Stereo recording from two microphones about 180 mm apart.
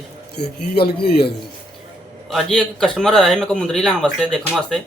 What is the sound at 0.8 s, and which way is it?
Speech, 60° left (ahead or behind).